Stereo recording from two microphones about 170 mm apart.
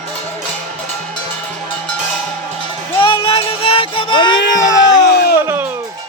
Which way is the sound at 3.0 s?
30° left (ahead or behind).